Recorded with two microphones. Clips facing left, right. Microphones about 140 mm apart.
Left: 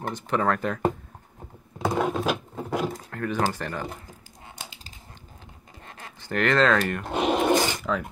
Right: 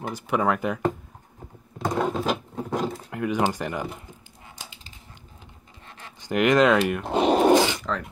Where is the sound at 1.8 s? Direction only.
5° left (ahead or behind).